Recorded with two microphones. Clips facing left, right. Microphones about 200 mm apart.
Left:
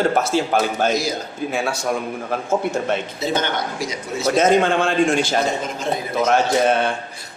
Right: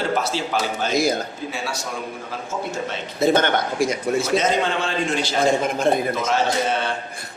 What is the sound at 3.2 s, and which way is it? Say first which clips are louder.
A man's voice: right 4 dB; 55° right (ahead or behind).